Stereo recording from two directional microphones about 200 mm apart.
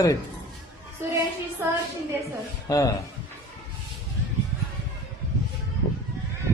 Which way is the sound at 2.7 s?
15° left (ahead or behind).